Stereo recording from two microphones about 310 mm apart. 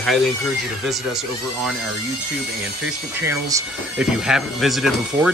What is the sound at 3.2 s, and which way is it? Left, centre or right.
Speech, centre.